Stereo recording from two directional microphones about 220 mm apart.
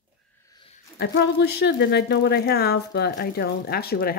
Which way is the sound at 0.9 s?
50° left (ahead or behind).